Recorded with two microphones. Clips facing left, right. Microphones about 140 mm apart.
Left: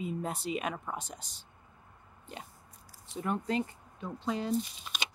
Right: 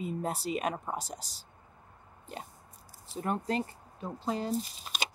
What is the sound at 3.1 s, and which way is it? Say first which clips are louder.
Speech: right 1 dB; 35° right (ahead or behind).